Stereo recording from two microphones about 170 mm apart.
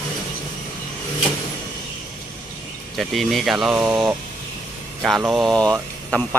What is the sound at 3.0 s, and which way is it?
Speech, centre (ahead or behind).